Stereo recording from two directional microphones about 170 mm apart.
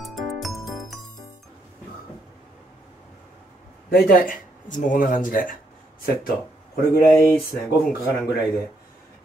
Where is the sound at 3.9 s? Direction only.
60° left (ahead or behind).